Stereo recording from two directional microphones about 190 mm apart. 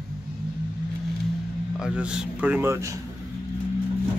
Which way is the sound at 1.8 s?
5° right (ahead or behind).